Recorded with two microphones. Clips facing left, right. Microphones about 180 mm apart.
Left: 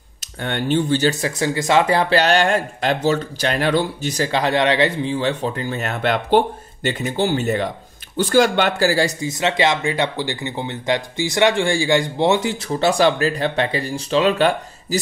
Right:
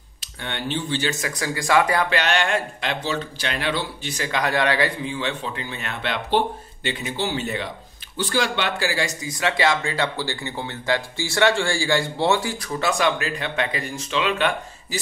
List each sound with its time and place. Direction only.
0.2 s speech: 45° left (ahead or behind)
1.3 s speech: 25° left (ahead or behind)
5.1 s speech: 40° left (ahead or behind)
9.3 s speech: 20° left (ahead or behind); by 15.0 s 40° left (ahead or behind)